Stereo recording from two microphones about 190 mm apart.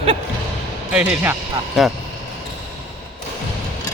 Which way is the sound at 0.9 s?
10° right (ahead or behind).